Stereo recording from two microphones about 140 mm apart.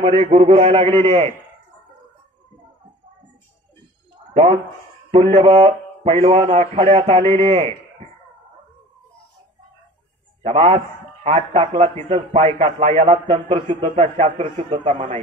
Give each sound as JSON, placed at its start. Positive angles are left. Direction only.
{"t": 0.0, "sound": "a man's voice", "side_deg": -40}
{"t": 5.3, "sound": "speech", "side_deg": -40}
{"t": 7.4, "sound": "a man's voice", "side_deg": -55}
{"t": 10.4, "sound": "a man's voice", "side_deg": -50}